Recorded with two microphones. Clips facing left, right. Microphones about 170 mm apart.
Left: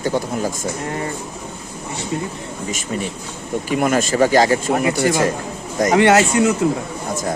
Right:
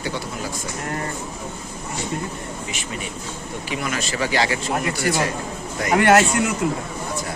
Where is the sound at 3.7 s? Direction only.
50° left (ahead or behind).